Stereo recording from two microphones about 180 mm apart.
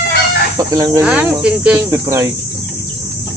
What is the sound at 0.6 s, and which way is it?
Speech, 20° right (ahead or behind).